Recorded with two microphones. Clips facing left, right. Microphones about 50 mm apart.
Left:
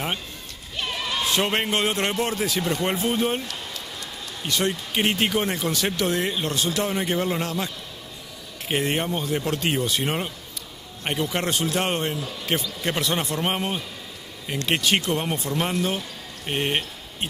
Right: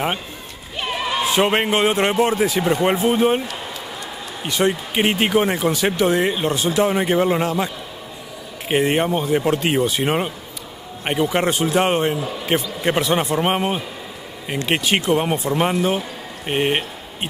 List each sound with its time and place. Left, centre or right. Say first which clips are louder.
0.7 s speech: right 5 dB; centre